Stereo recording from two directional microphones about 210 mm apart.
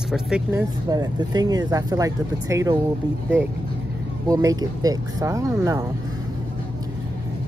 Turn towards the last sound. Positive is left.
turn(degrees=-15)  # may be behind; listen again after turning